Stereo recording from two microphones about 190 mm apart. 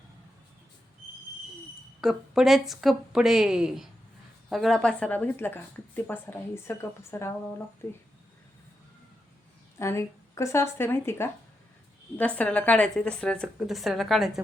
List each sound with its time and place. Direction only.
2.0 s a woman's voice: centre (ahead or behind)
9.7 s a woman's voice: 15° left (ahead or behind)
12.4 s a woman's voice: 5° left (ahead or behind)